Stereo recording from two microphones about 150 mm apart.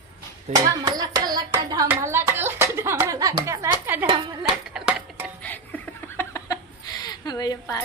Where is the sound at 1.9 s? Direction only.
15° right (ahead or behind).